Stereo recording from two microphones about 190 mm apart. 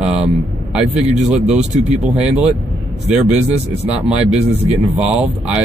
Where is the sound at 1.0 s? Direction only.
35° right (ahead or behind).